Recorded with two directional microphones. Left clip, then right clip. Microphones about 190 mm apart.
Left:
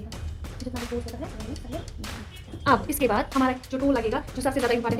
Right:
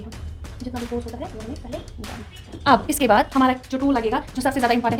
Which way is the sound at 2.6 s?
55° right (ahead or behind).